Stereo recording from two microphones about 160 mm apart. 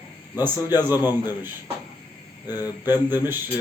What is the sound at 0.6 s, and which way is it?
Speech, 25° left (ahead or behind).